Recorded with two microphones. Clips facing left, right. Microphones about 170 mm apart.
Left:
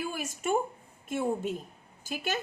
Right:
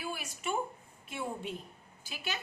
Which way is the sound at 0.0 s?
45° left (ahead or behind).